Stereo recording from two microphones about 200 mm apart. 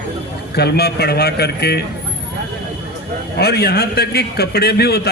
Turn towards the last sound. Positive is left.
turn(degrees=50)  # may be behind; listen again after turning